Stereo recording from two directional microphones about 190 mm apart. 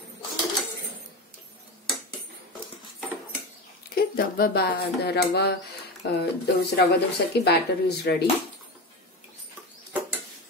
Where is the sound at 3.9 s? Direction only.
55° left (ahead or behind).